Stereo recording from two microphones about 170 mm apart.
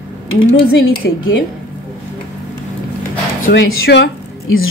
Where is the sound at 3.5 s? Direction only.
90° left.